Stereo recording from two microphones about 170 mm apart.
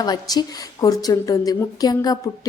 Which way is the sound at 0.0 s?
25° left (ahead or behind).